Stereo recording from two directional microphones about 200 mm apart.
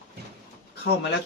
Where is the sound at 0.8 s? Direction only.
55° left (ahead or behind).